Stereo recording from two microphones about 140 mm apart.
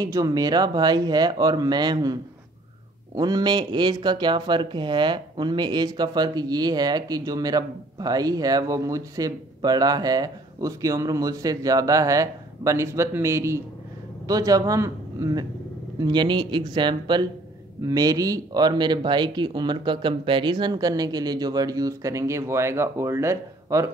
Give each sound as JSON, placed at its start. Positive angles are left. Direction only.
{"t": 0.0, "sound": "speech", "side_deg": -25}
{"t": 3.2, "sound": "speech", "side_deg": -30}